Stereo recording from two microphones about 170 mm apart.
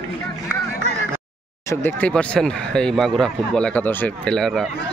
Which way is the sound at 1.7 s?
10° left (ahead or behind).